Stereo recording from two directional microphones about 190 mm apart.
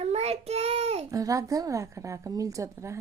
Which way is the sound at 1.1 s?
15° right (ahead or behind).